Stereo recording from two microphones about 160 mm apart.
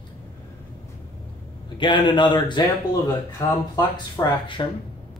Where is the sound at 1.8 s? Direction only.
30° left (ahead or behind).